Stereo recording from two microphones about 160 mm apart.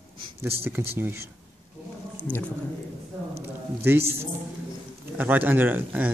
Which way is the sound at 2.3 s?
10° left (ahead or behind).